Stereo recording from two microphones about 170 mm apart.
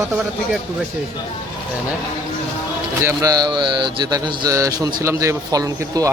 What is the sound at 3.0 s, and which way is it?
A man's voice, 15° right (ahead or behind).